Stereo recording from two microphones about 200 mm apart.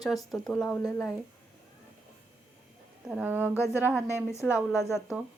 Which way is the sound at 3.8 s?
10° right (ahead or behind).